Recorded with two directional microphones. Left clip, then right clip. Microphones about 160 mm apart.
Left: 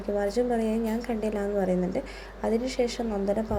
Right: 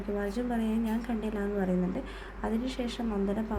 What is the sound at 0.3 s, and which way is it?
A woman's voice, 5° left (ahead or behind).